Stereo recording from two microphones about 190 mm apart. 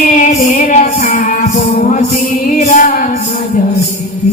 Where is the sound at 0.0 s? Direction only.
45° left (ahead or behind).